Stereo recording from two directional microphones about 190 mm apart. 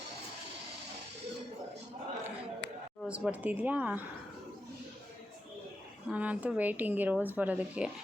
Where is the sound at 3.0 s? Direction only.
5° right (ahead or behind).